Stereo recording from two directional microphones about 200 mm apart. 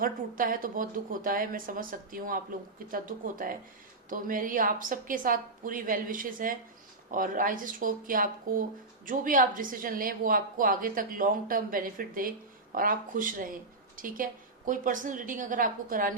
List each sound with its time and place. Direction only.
0.0 s a woman's voice: 45° right (ahead or behind)